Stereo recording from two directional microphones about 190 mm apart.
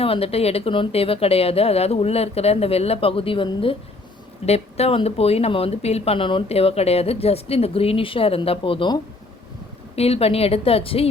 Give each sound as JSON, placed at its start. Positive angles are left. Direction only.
{"t": 0.0, "sound": "speech", "side_deg": 30}